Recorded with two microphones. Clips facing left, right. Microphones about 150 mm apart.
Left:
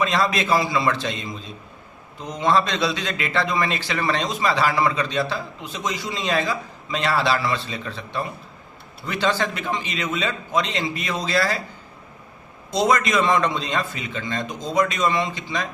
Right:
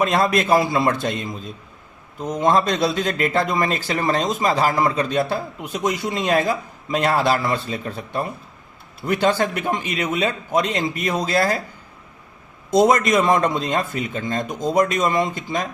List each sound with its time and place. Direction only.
0.0 s a man's voice: 50° right (ahead or behind)
12.7 s a man's voice: 50° right (ahead or behind)